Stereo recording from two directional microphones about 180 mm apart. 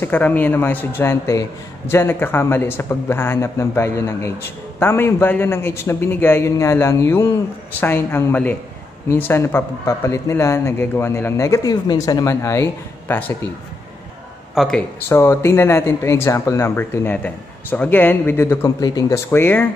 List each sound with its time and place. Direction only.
0.0 s speech: 10° left (ahead or behind)
14.5 s speech: centre (ahead or behind)
15.0 s speech: 15° left (ahead or behind)